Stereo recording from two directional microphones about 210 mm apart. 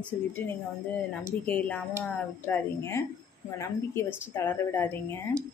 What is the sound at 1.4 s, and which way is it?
A woman's voice, 10° left (ahead or behind).